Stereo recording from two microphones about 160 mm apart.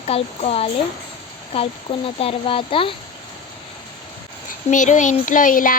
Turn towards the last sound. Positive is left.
turn(degrees=55)  # may be behind; listen again after turning